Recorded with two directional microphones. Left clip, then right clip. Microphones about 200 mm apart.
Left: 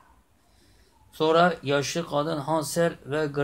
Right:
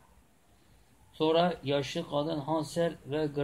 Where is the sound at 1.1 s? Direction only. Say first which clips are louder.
Left 6 dB; 15° left (ahead or behind).